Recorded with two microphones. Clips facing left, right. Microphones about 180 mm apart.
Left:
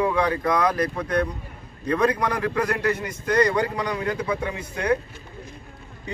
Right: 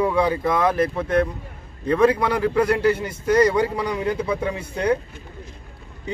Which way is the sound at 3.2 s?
5° right (ahead or behind).